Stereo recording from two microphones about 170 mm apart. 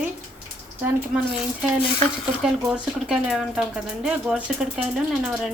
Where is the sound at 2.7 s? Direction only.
5° right (ahead or behind).